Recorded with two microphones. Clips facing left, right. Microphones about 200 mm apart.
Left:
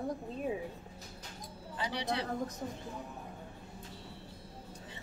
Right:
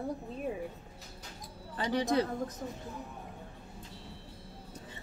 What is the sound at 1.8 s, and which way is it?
Speech, 45° right (ahead or behind).